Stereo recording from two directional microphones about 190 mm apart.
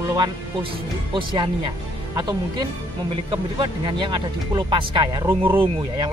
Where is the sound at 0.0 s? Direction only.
20° right (ahead or behind).